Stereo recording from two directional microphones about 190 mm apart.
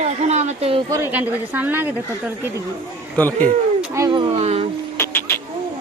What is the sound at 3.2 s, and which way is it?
Speech, 10° left (ahead or behind).